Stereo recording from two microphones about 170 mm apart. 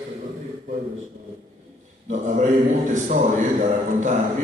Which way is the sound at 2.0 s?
45° right (ahead or behind).